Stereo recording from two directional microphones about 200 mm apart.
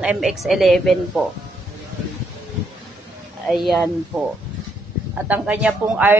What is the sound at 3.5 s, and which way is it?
A woman's voice, centre (ahead or behind).